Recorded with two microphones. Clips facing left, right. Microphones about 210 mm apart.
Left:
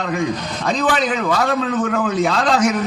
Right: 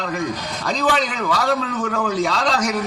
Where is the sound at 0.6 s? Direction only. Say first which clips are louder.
Left 2 dB; 55° left (ahead or behind).